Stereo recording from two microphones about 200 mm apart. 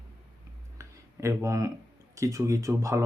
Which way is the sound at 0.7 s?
15° right (ahead or behind).